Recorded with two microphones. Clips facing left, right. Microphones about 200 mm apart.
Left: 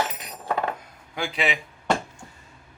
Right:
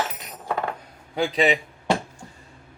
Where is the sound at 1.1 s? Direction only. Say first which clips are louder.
Right 6 dB; 35° right (ahead or behind).